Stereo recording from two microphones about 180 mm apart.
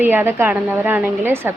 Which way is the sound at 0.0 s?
10° right (ahead or behind).